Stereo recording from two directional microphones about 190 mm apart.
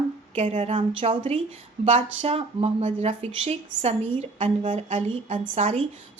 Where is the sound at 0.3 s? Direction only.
30° right (ahead or behind).